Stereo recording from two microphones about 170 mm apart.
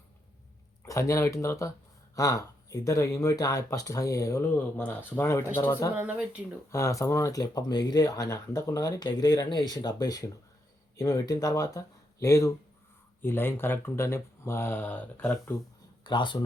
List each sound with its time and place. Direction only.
0.8 s speech: 15° left (ahead or behind)
5.9 s speech: 10° right (ahead or behind)
6.7 s speech: 20° left (ahead or behind)
16.0 s speech: 30° left (ahead or behind)